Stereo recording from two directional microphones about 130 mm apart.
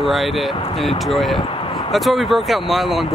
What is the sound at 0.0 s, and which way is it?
Speech, centre (ahead or behind).